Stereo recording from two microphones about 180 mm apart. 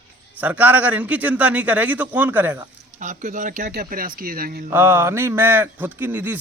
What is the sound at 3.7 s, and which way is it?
Speech, 55° right (ahead or behind).